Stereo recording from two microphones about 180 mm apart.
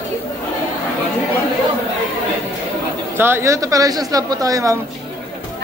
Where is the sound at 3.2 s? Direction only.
15° right (ahead or behind).